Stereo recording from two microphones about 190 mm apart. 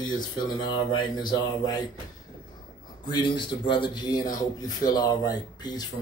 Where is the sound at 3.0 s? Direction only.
25° left (ahead or behind).